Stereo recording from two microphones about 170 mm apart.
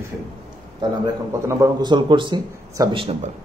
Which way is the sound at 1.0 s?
15° right (ahead or behind).